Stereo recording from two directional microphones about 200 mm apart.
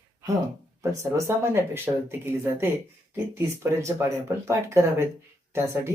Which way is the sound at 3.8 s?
15° right (ahead or behind).